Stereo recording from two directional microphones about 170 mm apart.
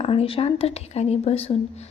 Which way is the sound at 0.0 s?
35° left (ahead or behind).